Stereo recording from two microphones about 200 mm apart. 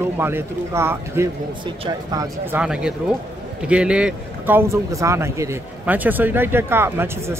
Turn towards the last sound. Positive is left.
turn(degrees=-10)  # may be behind; listen again after turning